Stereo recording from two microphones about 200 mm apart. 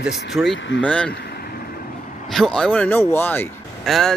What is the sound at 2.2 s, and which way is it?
Speech, centre (ahead or behind).